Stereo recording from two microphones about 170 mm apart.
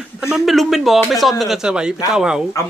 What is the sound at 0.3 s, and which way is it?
Speech, centre (ahead or behind).